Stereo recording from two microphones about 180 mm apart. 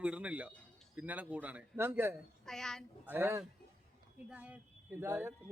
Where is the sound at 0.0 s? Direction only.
5° right (ahead or behind).